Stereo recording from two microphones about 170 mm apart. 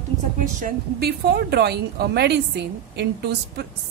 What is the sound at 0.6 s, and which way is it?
A woman's voice, 65° right (ahead or behind).